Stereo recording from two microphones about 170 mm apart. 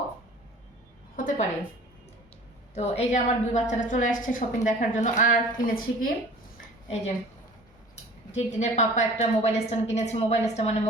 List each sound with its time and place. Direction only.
1.1 s a sound: 50° left (ahead or behind)
2.7 s a woman's voice: 40° left (ahead or behind); by 6.1 s 55° left (ahead or behind)
8.3 s a woman's voice: 45° left (ahead or behind)